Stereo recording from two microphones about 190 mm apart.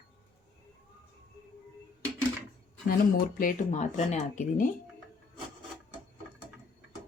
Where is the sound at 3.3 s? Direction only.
45° left (ahead or behind).